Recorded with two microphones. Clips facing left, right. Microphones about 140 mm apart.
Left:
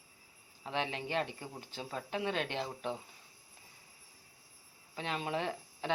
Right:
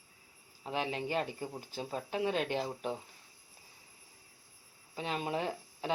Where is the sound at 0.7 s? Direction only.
40° right (ahead or behind).